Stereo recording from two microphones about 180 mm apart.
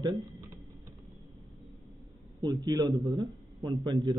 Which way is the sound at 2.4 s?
25° right (ahead or behind).